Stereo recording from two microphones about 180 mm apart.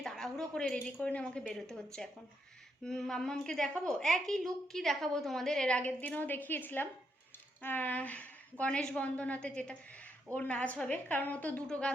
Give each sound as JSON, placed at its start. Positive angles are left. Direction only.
{"t": 0.0, "sound": "a woman's voice", "side_deg": 0}